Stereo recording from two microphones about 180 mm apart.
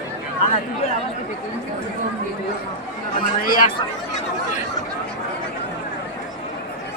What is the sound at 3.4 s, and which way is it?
Speech, 50° left (ahead or behind).